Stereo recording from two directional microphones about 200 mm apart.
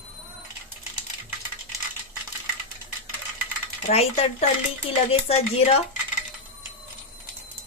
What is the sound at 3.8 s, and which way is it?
Speech, 30° left (ahead or behind).